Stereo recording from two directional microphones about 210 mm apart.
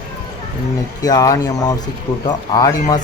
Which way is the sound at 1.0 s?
15° left (ahead or behind).